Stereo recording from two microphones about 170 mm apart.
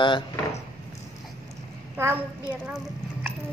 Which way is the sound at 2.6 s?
10° right (ahead or behind).